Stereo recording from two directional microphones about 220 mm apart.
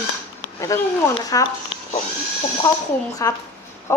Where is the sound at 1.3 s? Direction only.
15° left (ahead or behind).